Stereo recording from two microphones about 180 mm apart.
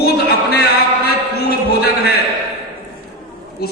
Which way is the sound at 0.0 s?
60° left (ahead or behind).